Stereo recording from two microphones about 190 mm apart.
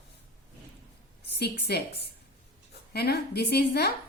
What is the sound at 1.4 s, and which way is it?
Speech, 60° left (ahead or behind).